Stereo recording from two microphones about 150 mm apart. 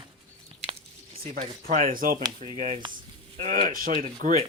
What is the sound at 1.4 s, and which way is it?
Speech, 70° right (ahead or behind).